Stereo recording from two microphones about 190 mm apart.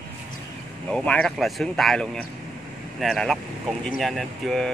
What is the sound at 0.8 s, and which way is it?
Speech, 5° left (ahead or behind).